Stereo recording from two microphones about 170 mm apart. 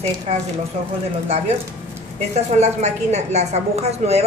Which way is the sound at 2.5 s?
40° right (ahead or behind).